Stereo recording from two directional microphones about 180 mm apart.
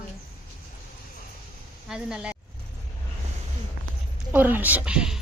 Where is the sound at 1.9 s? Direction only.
5° right (ahead or behind).